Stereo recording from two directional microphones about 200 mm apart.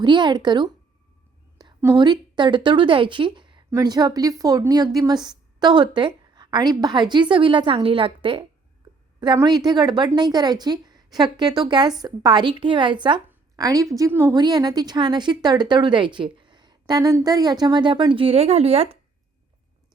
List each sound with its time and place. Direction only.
0.0 s a woman's voice: 20° right (ahead or behind)
1.5 s a sound: 20° right (ahead or behind)
2.0 s a woman's voice: 20° right (ahead or behind)